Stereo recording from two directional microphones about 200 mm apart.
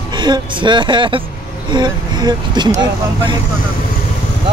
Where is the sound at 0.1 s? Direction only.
25° right (ahead or behind).